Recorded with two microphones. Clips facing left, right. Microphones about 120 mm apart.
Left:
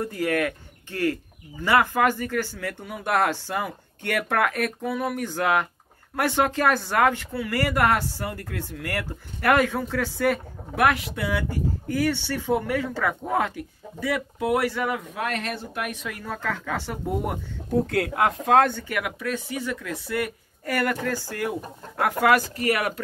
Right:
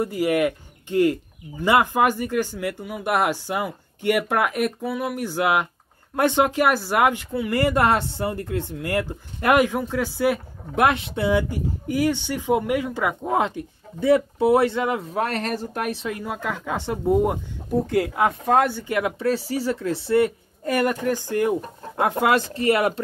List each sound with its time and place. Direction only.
0.0 s speech: 10° right (ahead or behind)
10.8 s speech: 25° right (ahead or behind)
15.0 s speech: 35° right (ahead or behind)
16.2 s speech: 15° right (ahead or behind)
17.9 s speech: centre (ahead or behind)
18.6 s speech: 15° right (ahead or behind)
18.9 s speech: 25° right (ahead or behind)